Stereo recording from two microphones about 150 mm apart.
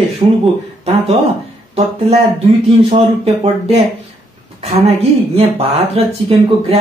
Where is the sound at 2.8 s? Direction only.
40° right (ahead or behind).